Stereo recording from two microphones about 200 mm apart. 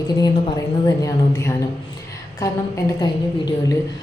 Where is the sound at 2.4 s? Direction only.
20° left (ahead or behind).